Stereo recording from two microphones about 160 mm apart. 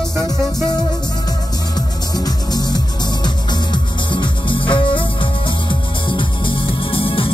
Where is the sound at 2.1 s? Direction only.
25° left (ahead or behind).